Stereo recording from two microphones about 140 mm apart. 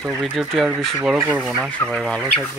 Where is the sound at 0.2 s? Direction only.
Centre (ahead or behind).